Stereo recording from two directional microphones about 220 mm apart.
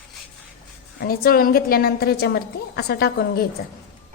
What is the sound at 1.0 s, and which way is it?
A woman's voice, 45° left (ahead or behind).